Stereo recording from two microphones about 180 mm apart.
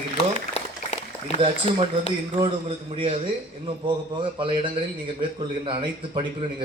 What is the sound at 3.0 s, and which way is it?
A man's voice, 30° right (ahead or behind).